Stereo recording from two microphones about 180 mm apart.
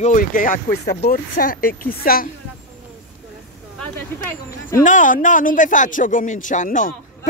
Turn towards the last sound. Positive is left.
turn(degrees=45)  # may be behind; listen again after turning